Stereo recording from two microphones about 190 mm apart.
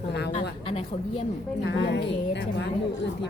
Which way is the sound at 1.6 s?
65° left (ahead or behind).